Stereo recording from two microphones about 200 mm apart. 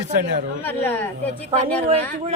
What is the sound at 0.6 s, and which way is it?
Speech, 10° left (ahead or behind).